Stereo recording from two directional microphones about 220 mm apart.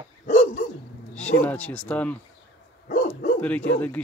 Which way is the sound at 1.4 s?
5° left (ahead or behind).